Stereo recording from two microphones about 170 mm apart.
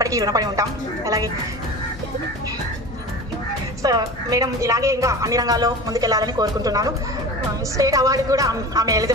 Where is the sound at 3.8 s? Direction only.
20° right (ahead or behind).